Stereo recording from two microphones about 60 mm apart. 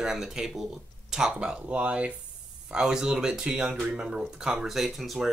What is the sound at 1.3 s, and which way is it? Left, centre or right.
Speech, centre.